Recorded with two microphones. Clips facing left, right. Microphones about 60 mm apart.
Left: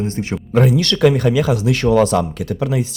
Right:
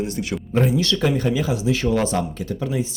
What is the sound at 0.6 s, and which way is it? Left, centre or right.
Speech, left.